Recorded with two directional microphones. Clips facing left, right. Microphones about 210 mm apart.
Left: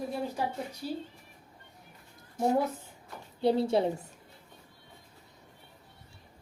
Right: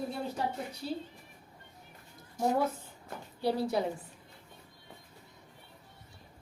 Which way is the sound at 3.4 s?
25° left (ahead or behind).